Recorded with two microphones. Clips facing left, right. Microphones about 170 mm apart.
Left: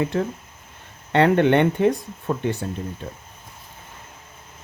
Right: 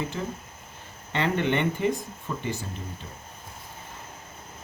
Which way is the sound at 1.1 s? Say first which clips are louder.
Left 9 dB; 65° left (ahead or behind).